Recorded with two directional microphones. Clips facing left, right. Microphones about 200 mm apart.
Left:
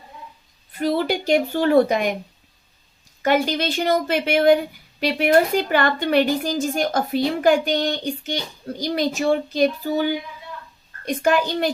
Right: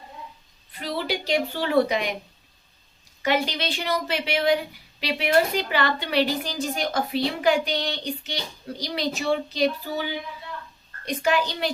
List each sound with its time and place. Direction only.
0.7 s a woman's voice: 45° left (ahead or behind)
3.2 s a woman's voice: 45° left (ahead or behind)